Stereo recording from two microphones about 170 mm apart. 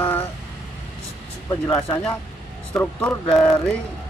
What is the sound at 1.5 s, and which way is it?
A man's voice, 20° left (ahead or behind).